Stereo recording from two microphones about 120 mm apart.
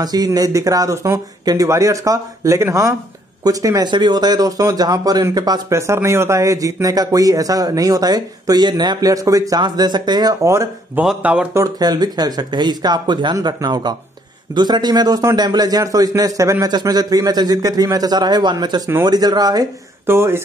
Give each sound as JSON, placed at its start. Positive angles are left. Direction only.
{"t": 0.0, "sound": "speech", "side_deg": -35}
{"t": 11.1, "sound": "speech", "side_deg": -10}
{"t": 11.5, "sound": "a man's voice", "side_deg": -30}